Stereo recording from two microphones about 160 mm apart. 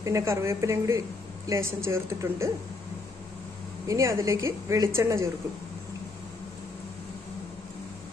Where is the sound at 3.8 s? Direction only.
20° right (ahead or behind).